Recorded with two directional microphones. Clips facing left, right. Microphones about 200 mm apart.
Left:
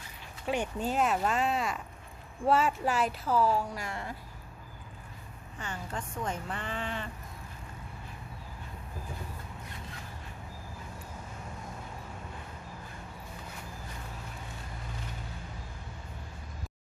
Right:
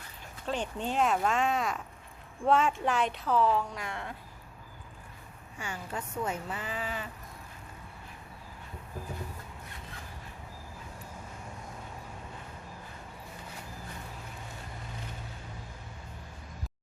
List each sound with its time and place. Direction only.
0.4 s speech: 10° left (ahead or behind)
5.5 s a woman's voice: 10° right (ahead or behind)